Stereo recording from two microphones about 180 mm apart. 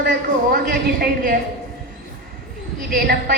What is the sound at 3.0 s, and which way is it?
Speech, 55° right (ahead or behind).